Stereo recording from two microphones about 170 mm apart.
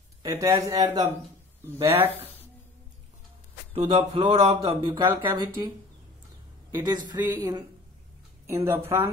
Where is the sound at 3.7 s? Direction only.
30° right (ahead or behind).